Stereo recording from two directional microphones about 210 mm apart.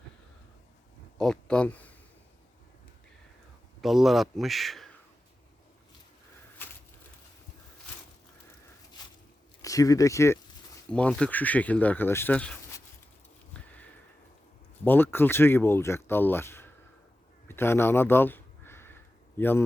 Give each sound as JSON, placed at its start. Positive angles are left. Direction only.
{"t": 1.2, "sound": "speech", "side_deg": 5}
{"t": 3.8, "sound": "a man's voice", "side_deg": 0}
{"t": 6.6, "sound": "a sound", "side_deg": 10}
{"t": 9.6, "sound": "speech", "side_deg": 15}
{"t": 13.5, "sound": "sniff", "side_deg": 5}
{"t": 14.8, "sound": "speech", "side_deg": 10}
{"t": 17.5, "sound": "a sound", "side_deg": 10}
{"t": 19.4, "sound": "speech", "side_deg": 10}